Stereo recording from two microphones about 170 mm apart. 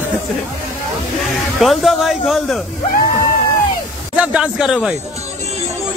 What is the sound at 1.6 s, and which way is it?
Speech, centre (ahead or behind).